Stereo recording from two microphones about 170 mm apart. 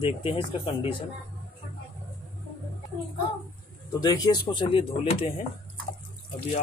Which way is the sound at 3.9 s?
25° left (ahead or behind).